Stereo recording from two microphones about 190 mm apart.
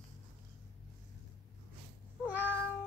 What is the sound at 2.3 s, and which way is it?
Meow, 10° right (ahead or behind).